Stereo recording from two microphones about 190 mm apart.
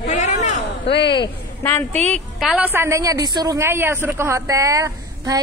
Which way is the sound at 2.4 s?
5° right (ahead or behind).